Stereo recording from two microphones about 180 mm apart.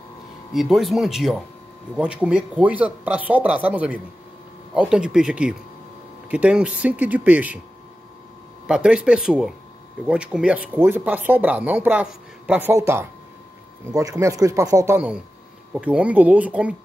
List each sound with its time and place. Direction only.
0.5 s speech: centre (ahead or behind)
8.6 s speech: 5° right (ahead or behind)
15.7 s speech: 5° right (ahead or behind)